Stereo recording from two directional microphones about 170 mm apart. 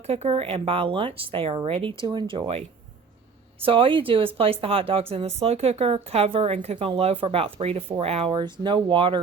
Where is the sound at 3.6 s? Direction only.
30° right (ahead or behind).